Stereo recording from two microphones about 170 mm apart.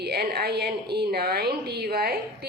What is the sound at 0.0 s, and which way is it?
A woman's voice, 70° right (ahead or behind).